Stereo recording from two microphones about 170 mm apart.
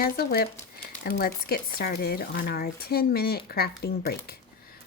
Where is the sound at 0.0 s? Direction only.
65° left (ahead or behind).